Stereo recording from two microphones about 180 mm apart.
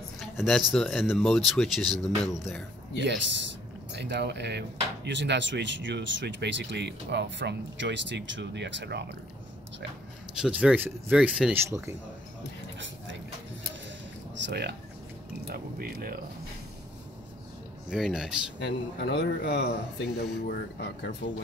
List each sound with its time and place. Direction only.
0.2 s speech: centre (ahead or behind)
3.0 s speech: 80° right
3.9 s speech: 70° right (ahead or behind)
10.3 s speech: 5° right (ahead or behind)
12.7 s a sound: 90° right
14.4 s a sound: 65° right (ahead or behind)
17.8 s speech: 5° right (ahead or behind)
18.6 s a man's voice: 70° left (ahead or behind)